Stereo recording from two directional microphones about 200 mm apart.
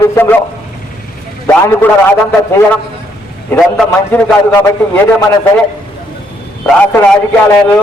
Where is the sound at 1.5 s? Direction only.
10° left (ahead or behind).